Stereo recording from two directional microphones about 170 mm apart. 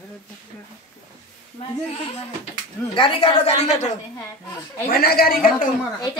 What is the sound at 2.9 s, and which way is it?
A woman's voice, 30° left (ahead or behind).